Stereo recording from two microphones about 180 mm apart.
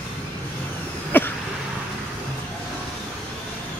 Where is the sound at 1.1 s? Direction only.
10° left (ahead or behind).